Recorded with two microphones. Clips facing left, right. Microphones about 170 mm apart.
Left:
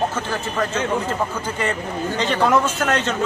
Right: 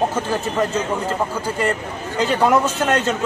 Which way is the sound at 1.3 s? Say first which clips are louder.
Right 3 dB; 5° right (ahead or behind).